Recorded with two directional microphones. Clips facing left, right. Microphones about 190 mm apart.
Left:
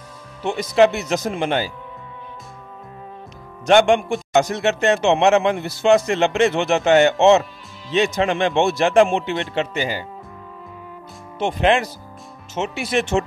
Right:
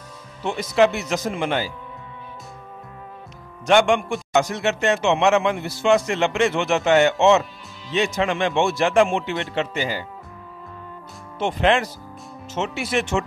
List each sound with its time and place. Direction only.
0.4 s a man's voice: 20° left (ahead or behind)
3.6 s a man's voice: 25° left (ahead or behind)
11.3 s a man's voice: 15° left (ahead or behind)